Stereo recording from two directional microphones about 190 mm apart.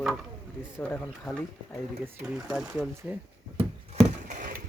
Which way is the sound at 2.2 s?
Centre (ahead or behind).